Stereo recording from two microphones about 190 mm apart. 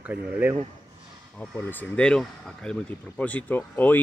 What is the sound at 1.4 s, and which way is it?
Speech, 10° left (ahead or behind).